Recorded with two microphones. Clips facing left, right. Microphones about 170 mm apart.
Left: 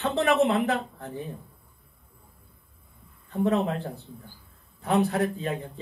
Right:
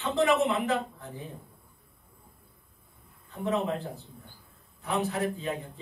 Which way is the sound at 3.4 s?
60° left (ahead or behind).